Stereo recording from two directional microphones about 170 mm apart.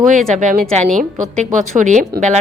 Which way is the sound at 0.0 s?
50° right (ahead or behind).